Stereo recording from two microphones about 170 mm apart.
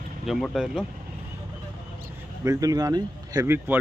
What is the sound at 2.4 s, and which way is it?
Speech, 20° right (ahead or behind).